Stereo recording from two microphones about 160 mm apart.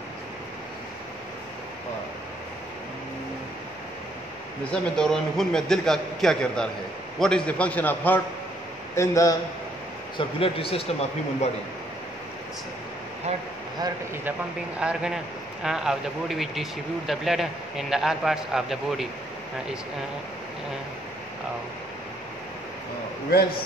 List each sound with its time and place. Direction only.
4.6 s a man's voice: 5° left (ahead or behind)
10.1 s a man's voice: 35° left (ahead or behind)
14.8 s speech: 5° right (ahead or behind)
23.3 s a man's voice: 75° left (ahead or behind)